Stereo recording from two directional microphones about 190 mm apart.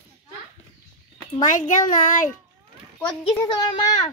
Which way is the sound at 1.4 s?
40° left (ahead or behind).